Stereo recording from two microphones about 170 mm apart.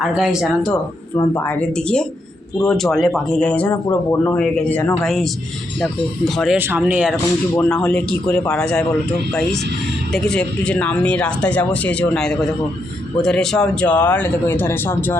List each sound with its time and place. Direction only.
0.1 s speech: 5° right (ahead or behind)
1.1 s speech: 15° left (ahead or behind)
4.4 s speech: 5° left (ahead or behind)
6.6 s speech: 10° right (ahead or behind)
7.5 s speech: 10° left (ahead or behind)